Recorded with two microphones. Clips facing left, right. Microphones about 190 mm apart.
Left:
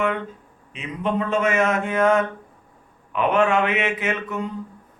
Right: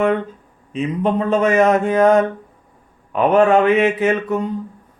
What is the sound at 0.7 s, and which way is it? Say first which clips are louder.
Mantra: right 6 dB; 40° right (ahead or behind).